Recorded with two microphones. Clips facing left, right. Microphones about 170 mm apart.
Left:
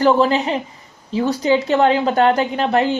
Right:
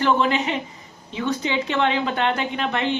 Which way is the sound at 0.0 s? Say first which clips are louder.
Left 5 dB; 35° left (ahead or behind).